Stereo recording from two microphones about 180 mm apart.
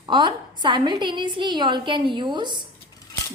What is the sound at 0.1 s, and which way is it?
A woman's voice, 25° right (ahead or behind).